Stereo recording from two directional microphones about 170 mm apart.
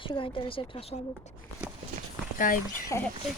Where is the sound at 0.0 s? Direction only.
30° left (ahead or behind).